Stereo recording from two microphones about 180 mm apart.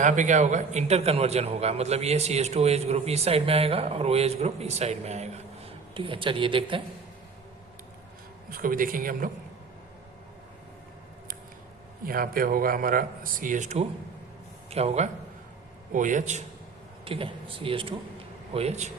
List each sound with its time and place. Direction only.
0.0 s a man's voice: 45° right (ahead or behind)
8.4 s speech: 50° right (ahead or behind)
12.0 s a man's voice: 55° right (ahead or behind)
17.1 s a man's voice: 30° right (ahead or behind)